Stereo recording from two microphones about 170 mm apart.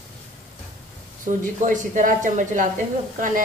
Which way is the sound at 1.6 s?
50° right (ahead or behind).